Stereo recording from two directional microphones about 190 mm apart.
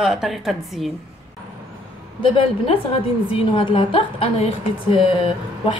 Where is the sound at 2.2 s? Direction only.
25° left (ahead or behind).